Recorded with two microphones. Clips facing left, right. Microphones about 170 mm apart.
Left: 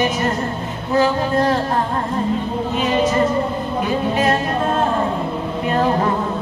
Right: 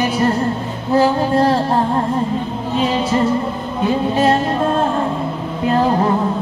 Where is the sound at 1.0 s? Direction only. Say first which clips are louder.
Right 2 dB; 30° right (ahead or behind).